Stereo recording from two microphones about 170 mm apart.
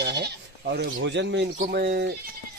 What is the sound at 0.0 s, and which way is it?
Bleat, 75° right (ahead or behind).